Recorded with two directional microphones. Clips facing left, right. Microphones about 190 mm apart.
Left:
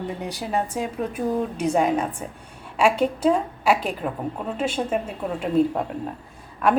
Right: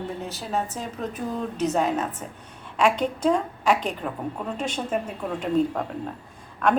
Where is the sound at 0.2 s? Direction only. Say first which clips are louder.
Left 4 dB; 15° left (ahead or behind).